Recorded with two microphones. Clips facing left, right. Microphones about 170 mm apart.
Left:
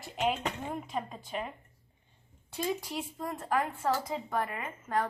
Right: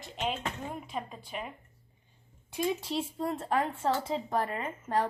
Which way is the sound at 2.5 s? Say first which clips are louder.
Right 3 dB; 25° right (ahead or behind).